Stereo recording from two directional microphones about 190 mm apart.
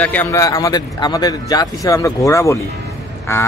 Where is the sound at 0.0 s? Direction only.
10° left (ahead or behind).